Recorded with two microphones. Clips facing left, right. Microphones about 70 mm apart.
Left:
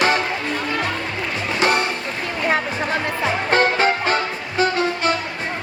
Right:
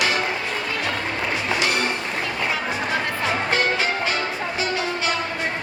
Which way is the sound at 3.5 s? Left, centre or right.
Left.